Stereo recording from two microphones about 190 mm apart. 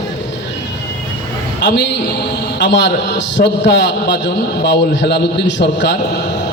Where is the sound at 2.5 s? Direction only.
65° left (ahead or behind).